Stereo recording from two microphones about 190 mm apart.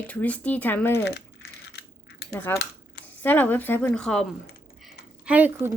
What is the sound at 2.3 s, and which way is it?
Speech, 15° left (ahead or behind).